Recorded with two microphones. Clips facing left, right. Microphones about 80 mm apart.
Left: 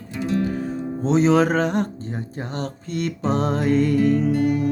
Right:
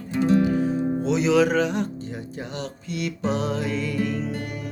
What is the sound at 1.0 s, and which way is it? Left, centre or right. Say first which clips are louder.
Music: left 4 dB; left.